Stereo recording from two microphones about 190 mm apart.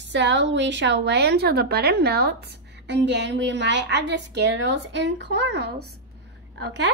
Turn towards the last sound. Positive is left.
turn(degrees=-65)  # may be behind; listen again after turning